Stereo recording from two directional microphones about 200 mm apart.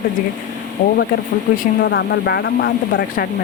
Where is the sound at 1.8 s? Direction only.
55° left (ahead or behind).